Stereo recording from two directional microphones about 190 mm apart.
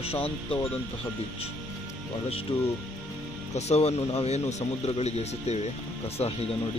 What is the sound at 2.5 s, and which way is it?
Speech, 30° left (ahead or behind).